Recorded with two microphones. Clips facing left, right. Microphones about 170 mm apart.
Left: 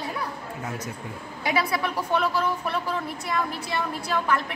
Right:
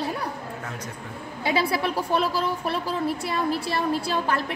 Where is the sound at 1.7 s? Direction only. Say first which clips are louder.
Right 1 dB; 30° right (ahead or behind).